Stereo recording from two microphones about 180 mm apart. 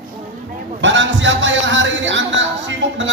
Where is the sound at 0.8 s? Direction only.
90° right.